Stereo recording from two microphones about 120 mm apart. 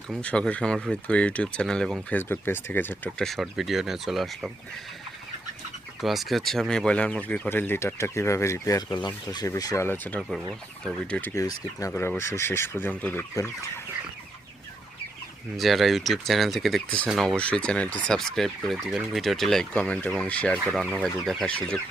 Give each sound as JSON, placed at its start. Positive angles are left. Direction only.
{"t": 0.2, "sound": "speech", "side_deg": 10}
{"t": 3.2, "sound": "fowl", "side_deg": 0}
{"t": 6.0, "sound": "speech", "side_deg": 0}
{"t": 13.3, "sound": "speech", "side_deg": 25}
{"t": 15.5, "sound": "fowl", "side_deg": 0}